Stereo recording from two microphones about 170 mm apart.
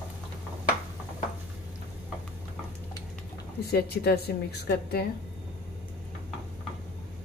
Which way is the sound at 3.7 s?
65° left (ahead or behind).